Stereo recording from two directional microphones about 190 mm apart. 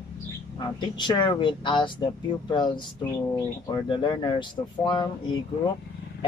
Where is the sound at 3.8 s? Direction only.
25° left (ahead or behind).